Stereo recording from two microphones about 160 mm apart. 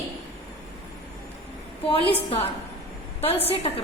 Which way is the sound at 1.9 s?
35° left (ahead or behind).